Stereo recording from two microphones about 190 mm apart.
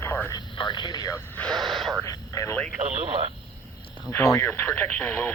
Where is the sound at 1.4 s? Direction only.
5° left (ahead or behind).